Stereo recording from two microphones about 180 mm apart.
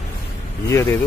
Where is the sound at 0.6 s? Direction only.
15° left (ahead or behind).